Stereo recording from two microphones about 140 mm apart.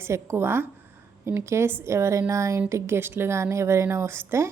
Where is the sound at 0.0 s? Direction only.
20° right (ahead or behind).